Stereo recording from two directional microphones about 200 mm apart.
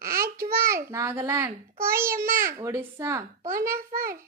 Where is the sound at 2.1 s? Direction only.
45° right (ahead or behind).